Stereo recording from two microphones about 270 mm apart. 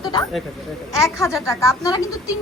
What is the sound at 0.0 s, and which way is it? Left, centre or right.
Speech, centre.